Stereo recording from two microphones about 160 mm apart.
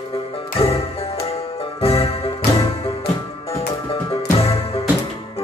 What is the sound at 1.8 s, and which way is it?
Music, 35° left (ahead or behind).